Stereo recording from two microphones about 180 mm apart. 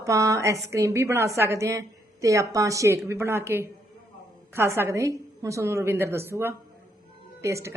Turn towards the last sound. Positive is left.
turn(degrees=-15)  # may be behind; listen again after turning